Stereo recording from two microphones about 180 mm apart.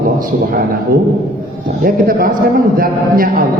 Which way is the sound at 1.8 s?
55° right (ahead or behind).